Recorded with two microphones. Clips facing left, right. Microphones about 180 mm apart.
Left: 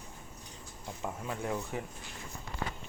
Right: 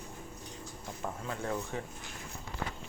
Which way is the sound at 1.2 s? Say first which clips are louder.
Even; 15° left (ahead or behind).